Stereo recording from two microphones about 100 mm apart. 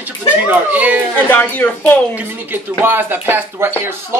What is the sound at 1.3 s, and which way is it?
Speech, 20° left (ahead or behind).